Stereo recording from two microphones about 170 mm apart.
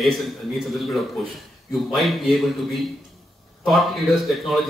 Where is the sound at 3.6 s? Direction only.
Centre (ahead or behind).